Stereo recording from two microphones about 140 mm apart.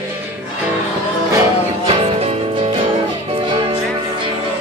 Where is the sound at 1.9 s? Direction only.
40° right (ahead or behind).